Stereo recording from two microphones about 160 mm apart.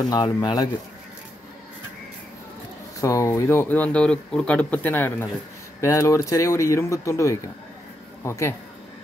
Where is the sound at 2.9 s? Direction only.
20° left (ahead or behind).